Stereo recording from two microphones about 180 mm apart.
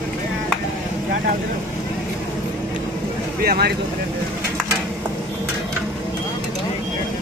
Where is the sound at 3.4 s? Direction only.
60° right (ahead or behind).